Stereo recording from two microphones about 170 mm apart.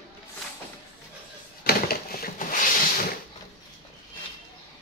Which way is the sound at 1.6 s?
65° left (ahead or behind).